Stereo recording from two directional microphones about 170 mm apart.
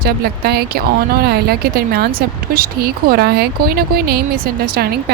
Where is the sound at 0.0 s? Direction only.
65° right (ahead or behind).